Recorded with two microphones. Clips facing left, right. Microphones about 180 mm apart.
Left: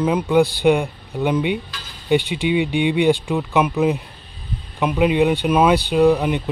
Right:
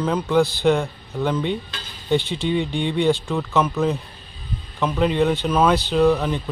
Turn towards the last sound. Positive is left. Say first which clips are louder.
# left 3 dB
turn(degrees=15)  # may be behind; listen again after turning